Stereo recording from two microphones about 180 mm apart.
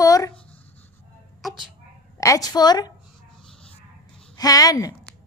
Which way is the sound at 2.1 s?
20° left (ahead or behind).